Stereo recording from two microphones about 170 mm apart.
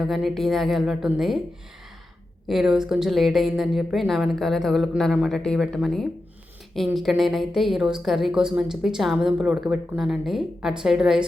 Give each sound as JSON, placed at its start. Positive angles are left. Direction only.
{"t": 0.0, "sound": "a woman's voice", "side_deg": 0}
{"t": 2.5, "sound": "a woman's voice", "side_deg": 0}